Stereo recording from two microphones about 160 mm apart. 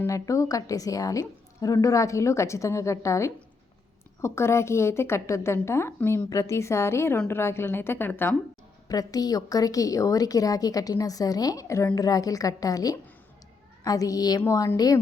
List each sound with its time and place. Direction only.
0.0 s a woman's voice: 20° left (ahead or behind)
8.9 s a woman's voice: 25° left (ahead or behind)